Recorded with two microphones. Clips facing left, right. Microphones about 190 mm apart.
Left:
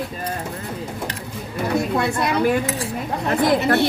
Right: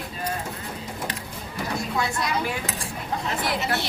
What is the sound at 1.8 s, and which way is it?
A woman's voice, 60° left (ahead or behind).